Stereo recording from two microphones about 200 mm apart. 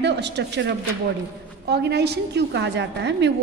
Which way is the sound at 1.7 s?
55° right (ahead or behind).